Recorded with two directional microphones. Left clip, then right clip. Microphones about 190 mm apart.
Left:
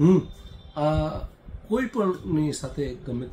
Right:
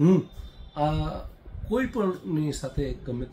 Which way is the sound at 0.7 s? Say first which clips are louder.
Left 3 dB; 5° right (ahead or behind).